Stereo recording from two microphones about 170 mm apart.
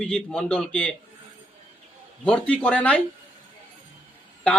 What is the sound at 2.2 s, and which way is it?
Speech, 5° left (ahead or behind).